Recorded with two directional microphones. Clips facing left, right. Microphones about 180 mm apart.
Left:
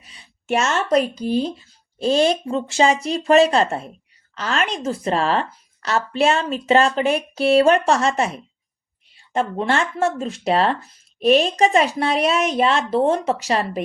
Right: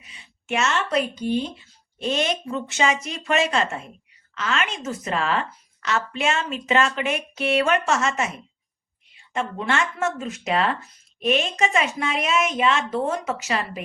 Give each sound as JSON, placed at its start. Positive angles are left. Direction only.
{"t": 0.0, "sound": "speech", "side_deg": 35}